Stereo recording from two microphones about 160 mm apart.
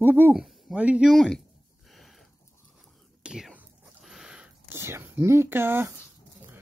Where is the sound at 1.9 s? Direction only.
Centre (ahead or behind).